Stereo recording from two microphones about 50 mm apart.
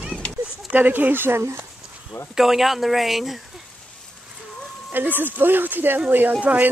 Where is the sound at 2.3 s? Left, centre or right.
Centre.